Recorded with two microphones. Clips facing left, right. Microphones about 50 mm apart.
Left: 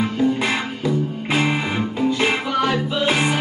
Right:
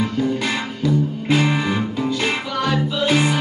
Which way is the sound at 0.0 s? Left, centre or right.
Centre.